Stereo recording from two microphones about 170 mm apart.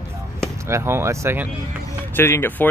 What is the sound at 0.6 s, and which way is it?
Speech, 15° right (ahead or behind).